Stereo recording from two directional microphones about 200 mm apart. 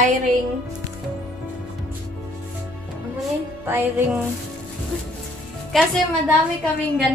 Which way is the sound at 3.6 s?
10° right (ahead or behind).